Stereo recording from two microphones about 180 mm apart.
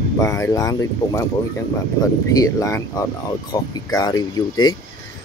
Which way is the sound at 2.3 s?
15° left (ahead or behind).